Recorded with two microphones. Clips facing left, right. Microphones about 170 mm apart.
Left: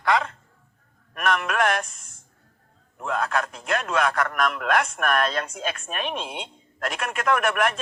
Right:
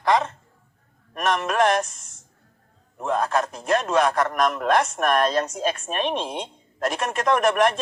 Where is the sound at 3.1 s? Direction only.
35° right (ahead or behind).